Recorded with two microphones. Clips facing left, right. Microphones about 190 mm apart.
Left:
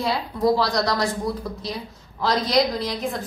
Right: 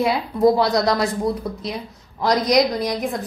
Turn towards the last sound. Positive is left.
turn(degrees=-15)  # may be behind; listen again after turning